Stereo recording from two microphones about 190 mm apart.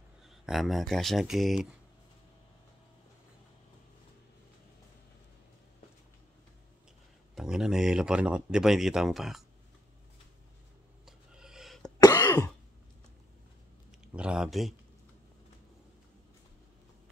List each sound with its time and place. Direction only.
0.2 s speech: centre (ahead or behind)
7.3 s speech: 5° right (ahead or behind)
11.1 s a sound: 5° right (ahead or behind)
12.0 s cough: 20° left (ahead or behind)
14.0 s speech: 5° right (ahead or behind)